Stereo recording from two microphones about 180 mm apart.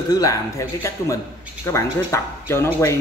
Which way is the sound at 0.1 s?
20° left (ahead or behind).